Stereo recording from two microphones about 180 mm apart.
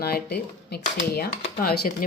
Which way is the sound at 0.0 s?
60° left (ahead or behind).